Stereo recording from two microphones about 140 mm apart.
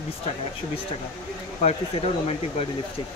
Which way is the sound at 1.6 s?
45° left (ahead or behind).